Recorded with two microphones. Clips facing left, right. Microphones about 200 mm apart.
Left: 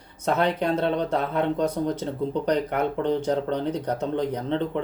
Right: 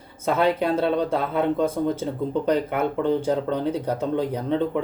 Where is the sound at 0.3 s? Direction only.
5° right (ahead or behind).